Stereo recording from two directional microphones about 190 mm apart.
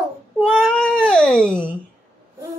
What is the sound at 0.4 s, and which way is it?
Cat, centre (ahead or behind).